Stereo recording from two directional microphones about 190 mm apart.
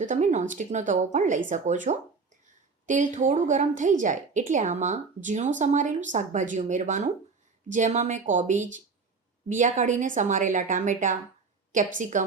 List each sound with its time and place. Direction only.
0.0 s a woman's voice: 40° right (ahead or behind)